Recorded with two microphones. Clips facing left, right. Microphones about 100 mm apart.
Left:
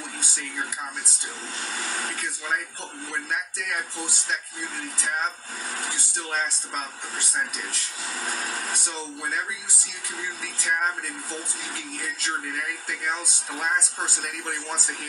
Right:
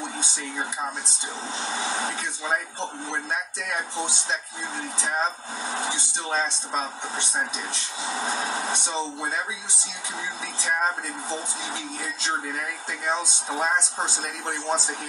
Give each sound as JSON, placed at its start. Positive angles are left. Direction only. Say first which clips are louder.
{"t": 0.2, "sound": "speech", "louder": "right 2 dB", "side_deg": -25}
{"t": 10.6, "sound": "speech", "louder": "right 1 dB", "side_deg": -25}